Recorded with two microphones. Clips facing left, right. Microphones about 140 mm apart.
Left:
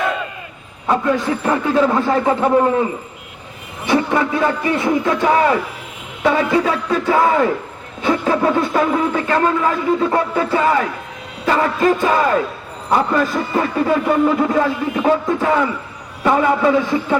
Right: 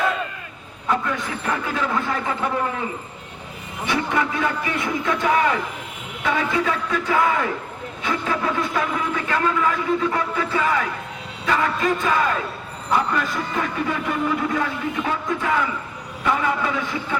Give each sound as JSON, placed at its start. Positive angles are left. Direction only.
{"t": 0.9, "sound": "speech", "side_deg": 35}
{"t": 3.8, "sound": "speech", "side_deg": 30}